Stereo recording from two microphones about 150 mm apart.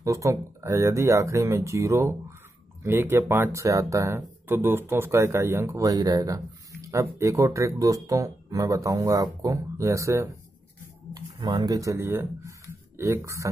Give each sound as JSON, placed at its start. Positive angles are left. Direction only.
{"t": 0.0, "sound": "speech", "side_deg": -20}